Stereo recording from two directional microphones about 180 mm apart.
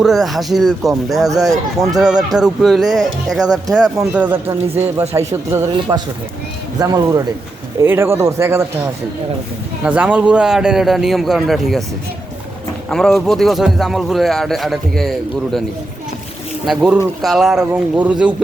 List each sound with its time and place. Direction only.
0.0 s a man's voice: centre (ahead or behind)
1.1 s speech: 20° right (ahead or behind)
2.0 s a man's voice: centre (ahead or behind)
4.1 s speech: 10° right (ahead or behind)
9.8 s a man's voice: 5° right (ahead or behind)
12.9 s a man's voice: centre (ahead or behind)
16.6 s a man's voice: 5° right (ahead or behind)